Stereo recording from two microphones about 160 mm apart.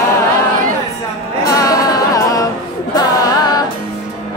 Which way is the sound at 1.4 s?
20° left (ahead or behind).